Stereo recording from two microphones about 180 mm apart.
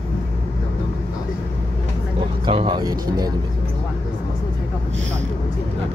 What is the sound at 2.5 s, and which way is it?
Speech, 30° right (ahead or behind).